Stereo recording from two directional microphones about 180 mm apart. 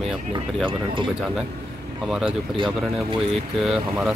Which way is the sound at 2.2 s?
30° right (ahead or behind).